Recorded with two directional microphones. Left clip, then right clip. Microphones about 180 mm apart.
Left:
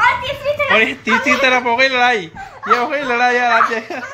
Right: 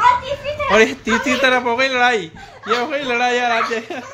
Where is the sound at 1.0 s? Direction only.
5° right (ahead or behind).